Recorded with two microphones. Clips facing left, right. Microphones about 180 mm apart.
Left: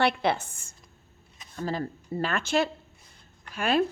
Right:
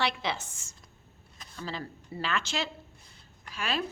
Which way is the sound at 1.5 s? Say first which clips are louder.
Left 7 dB; 45° left (ahead or behind).